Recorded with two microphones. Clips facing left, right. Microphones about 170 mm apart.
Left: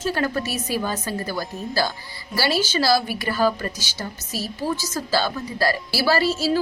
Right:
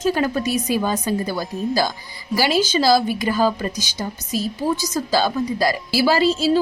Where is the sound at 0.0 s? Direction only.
15° right (ahead or behind).